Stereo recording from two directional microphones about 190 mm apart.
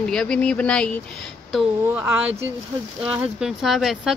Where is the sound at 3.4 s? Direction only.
Centre (ahead or behind).